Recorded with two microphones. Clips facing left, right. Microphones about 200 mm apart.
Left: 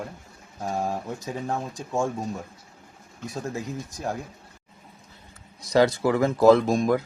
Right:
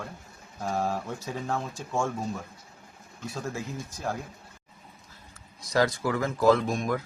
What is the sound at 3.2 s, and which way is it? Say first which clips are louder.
Speech: left 3 dB; 15° left (ahead or behind).